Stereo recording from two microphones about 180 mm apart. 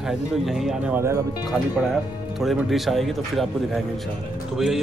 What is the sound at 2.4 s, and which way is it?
A man's voice, centre (ahead or behind).